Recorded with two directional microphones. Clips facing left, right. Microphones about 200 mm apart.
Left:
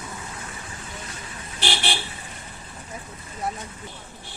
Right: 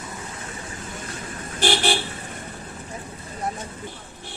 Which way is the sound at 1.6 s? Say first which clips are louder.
Right 6 dB; 45° right (ahead or behind).